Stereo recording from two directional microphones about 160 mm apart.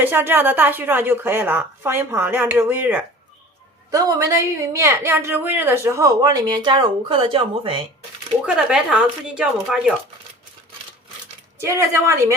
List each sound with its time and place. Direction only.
0.0 s a woman's voice: 15° right (ahead or behind); by 7.8 s 35° right (ahead or behind)
8.4 s speech: 5° right (ahead or behind)
11.6 s a woman's voice: 15° right (ahead or behind)